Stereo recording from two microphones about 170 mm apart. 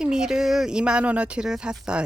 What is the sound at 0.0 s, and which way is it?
Speech, 5° right (ahead or behind).